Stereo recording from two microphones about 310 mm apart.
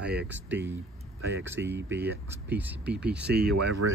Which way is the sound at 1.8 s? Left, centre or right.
Right.